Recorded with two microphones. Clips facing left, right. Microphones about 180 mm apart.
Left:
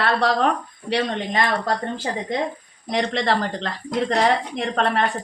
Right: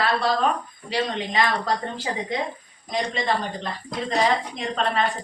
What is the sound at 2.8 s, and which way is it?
A woman's voice, 75° left (ahead or behind).